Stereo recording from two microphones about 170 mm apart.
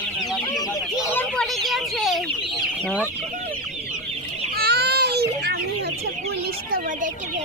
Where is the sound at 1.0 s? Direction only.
15° left (ahead or behind).